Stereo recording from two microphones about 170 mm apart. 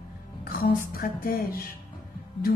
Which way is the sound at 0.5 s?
60° left (ahead or behind).